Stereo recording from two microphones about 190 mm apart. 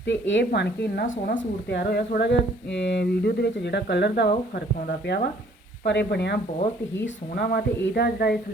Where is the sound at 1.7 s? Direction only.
60° left (ahead or behind).